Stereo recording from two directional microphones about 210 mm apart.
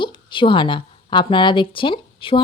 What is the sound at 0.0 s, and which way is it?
A woman's voice, 25° left (ahead or behind).